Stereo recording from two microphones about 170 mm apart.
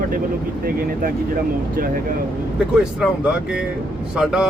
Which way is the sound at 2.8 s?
5° right (ahead or behind).